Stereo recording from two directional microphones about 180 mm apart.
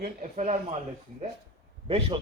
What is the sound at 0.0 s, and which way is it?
Speech, 45° right (ahead or behind).